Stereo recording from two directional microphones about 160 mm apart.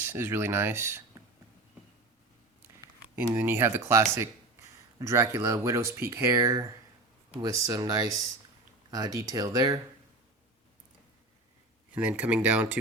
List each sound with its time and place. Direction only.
0.0 s speech: 15° right (ahead or behind)
3.2 s speech: 15° right (ahead or behind)
11.9 s speech: 10° right (ahead or behind)